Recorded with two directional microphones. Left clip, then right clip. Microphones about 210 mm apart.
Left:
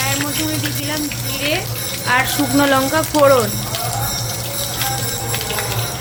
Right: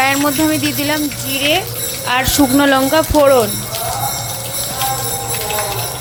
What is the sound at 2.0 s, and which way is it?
Speech, 25° right (ahead or behind).